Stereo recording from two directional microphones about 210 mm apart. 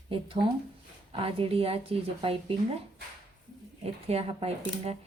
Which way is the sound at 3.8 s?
30° right (ahead or behind).